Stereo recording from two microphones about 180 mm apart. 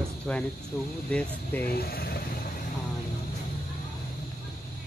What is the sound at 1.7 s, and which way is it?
Speech, 60° left (ahead or behind).